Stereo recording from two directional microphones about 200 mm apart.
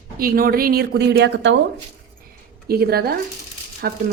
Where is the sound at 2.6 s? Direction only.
50° right (ahead or behind).